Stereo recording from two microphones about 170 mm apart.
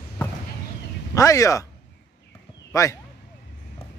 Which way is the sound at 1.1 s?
20° left (ahead or behind).